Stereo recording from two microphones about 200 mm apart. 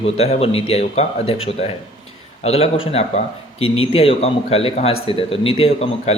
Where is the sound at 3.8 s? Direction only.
30° left (ahead or behind).